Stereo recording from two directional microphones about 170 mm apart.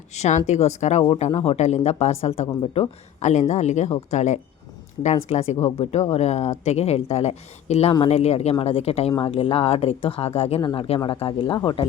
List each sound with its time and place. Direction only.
0.1 s speech: 40° left (ahead or behind)
1.0 s speech: 30° left (ahead or behind)